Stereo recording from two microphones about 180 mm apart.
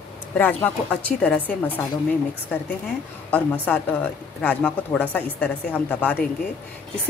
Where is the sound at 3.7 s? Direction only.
5° left (ahead or behind).